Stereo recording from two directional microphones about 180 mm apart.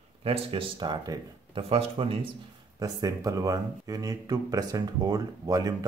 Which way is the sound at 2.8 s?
20° right (ahead or behind).